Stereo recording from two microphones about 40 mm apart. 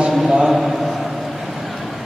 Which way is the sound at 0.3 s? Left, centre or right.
Centre.